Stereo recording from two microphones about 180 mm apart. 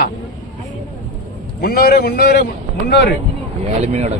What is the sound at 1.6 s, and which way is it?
Speech, 55° left (ahead or behind).